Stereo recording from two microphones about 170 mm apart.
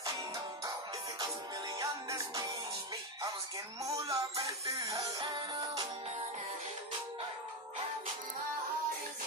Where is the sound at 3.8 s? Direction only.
20° right (ahead or behind).